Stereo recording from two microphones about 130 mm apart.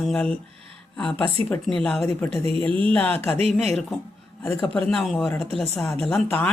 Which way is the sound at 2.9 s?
15° left (ahead or behind).